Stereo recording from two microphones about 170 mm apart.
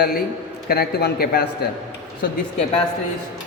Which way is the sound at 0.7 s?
65° left (ahead or behind).